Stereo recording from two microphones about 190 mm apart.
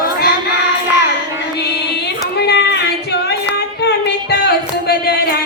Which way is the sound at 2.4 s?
60° left (ahead or behind).